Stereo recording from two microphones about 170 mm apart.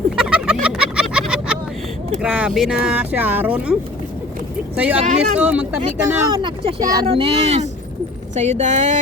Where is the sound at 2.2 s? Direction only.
5° right (ahead or behind).